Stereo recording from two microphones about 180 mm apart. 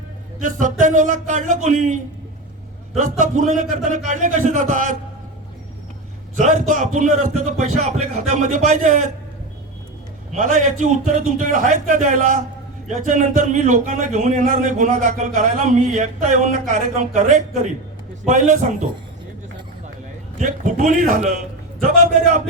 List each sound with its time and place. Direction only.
0.3 s speech: 45° right (ahead or behind)
6.3 s speech: 45° right (ahead or behind)
10.3 s speech: 40° right (ahead or behind)
20.4 s speech: 45° right (ahead or behind)